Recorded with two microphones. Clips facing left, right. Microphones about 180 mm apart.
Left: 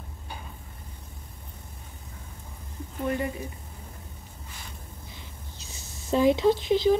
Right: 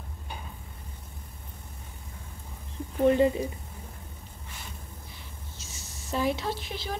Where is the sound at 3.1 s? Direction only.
25° right (ahead or behind).